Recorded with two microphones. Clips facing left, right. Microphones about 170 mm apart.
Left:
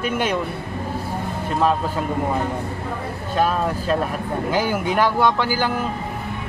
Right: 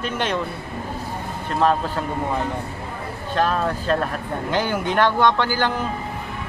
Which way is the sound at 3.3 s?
5° left (ahead or behind).